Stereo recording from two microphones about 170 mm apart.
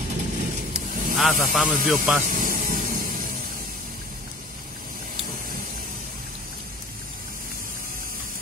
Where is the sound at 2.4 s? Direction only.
55° right (ahead or behind).